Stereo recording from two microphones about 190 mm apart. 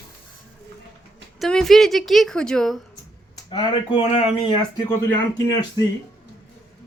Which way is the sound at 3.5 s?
30° left (ahead or behind).